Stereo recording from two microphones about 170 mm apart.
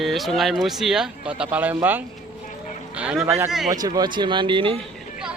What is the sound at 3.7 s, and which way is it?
Speech, 25° right (ahead or behind).